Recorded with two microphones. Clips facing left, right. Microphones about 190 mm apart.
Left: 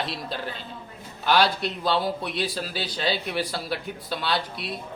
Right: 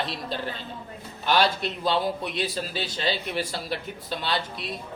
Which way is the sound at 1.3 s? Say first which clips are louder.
Left 1 dB; centre (ahead or behind).